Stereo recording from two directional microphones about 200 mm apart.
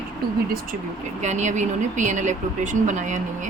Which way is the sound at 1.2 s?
35° right (ahead or behind).